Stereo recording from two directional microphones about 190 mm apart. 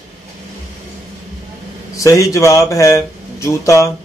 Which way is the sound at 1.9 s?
15° left (ahead or behind).